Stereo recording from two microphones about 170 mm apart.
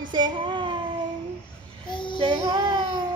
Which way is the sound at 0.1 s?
25° right (ahead or behind).